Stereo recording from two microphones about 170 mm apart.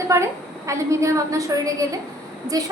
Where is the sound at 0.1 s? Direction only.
15° right (ahead or behind).